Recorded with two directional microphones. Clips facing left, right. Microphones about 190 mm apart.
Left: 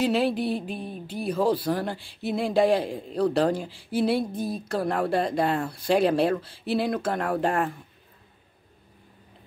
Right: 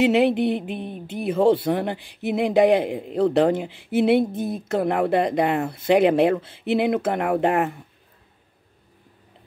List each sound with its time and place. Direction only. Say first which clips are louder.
0.0 s speech: right 6 dB; 20° right (ahead or behind)